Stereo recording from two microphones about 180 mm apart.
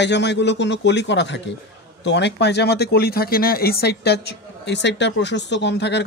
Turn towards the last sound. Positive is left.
turn(degrees=75)  # may be behind; listen again after turning